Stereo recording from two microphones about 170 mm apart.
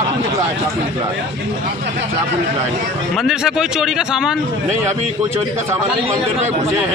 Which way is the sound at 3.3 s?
5° right (ahead or behind).